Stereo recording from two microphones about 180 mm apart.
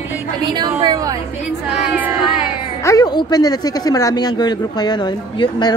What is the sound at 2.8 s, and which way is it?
Speech, 20° left (ahead or behind).